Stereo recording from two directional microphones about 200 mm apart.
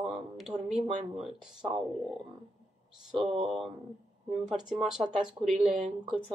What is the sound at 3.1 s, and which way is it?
Speech, 25° right (ahead or behind).